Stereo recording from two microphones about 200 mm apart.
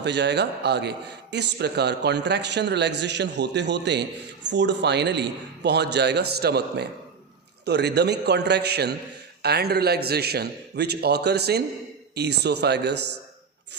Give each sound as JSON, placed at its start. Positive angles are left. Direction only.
{"t": 0.0, "sound": "a man's voice", "side_deg": -60}